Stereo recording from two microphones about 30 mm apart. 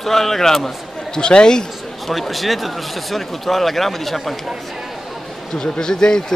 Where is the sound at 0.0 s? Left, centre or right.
Centre.